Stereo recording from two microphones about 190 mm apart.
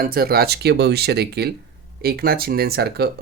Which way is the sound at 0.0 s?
50° right (ahead or behind).